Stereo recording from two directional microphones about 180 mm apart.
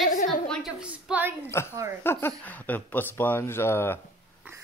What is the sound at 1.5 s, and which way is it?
Speech, 15° left (ahead or behind).